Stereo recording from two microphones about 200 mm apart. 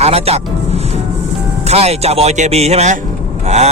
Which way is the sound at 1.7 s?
30° right (ahead or behind).